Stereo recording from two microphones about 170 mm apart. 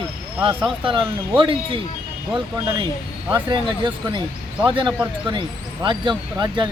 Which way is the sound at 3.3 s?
30° right (ahead or behind).